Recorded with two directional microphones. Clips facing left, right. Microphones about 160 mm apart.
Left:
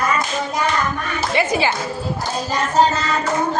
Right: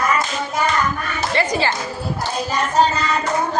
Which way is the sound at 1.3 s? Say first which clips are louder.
Left 1 dB; 10° left (ahead or behind).